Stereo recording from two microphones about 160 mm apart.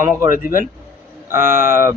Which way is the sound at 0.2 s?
60° left (ahead or behind).